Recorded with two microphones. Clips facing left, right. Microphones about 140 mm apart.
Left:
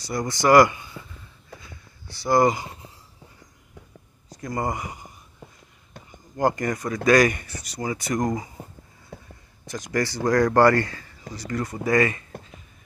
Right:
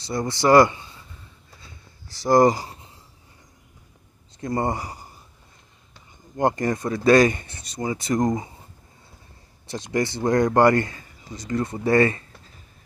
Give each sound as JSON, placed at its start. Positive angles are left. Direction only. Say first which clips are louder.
{"t": 0.0, "sound": "speech", "louder": "right 1 dB", "side_deg": -25}
{"t": 1.6, "sound": "a sound", "louder": "left 2 dB", "side_deg": -35}
{"t": 4.4, "sound": "speech", "louder": "right 3 dB", "side_deg": -30}
{"t": 6.3, "sound": "speech", "louder": "right 1 dB", "side_deg": -25}
{"t": 9.1, "sound": "a sound", "louder": "left 16 dB", "side_deg": 90}
{"t": 9.7, "sound": "speech", "louder": "right 1 dB", "side_deg": -25}